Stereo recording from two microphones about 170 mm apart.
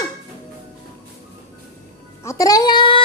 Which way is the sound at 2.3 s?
20° left (ahead or behind).